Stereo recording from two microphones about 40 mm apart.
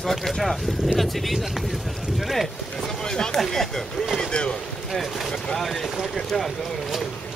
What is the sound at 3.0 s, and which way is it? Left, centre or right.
Speech, centre.